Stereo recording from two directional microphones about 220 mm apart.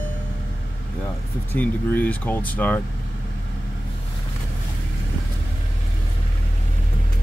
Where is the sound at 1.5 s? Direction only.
5° left (ahead or behind).